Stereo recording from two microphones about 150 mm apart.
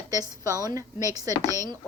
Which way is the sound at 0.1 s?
25° right (ahead or behind).